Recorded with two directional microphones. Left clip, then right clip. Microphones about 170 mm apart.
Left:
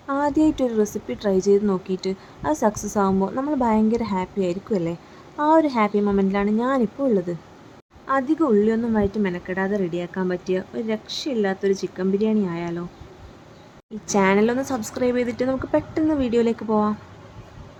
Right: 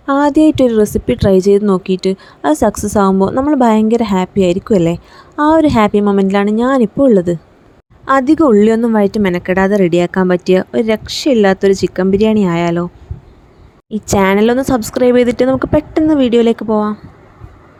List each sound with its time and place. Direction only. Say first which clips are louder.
0.0 s speech: right 10 dB; 40° right (ahead or behind)
14.1 s speech: right 8 dB; 50° right (ahead or behind); by 16.9 s 35° right (ahead or behind)